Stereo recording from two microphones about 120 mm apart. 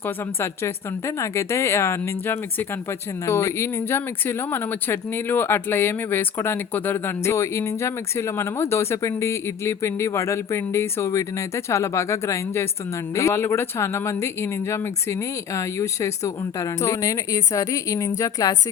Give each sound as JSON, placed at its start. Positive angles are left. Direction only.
{"t": 0.0, "sound": "speech", "side_deg": 20}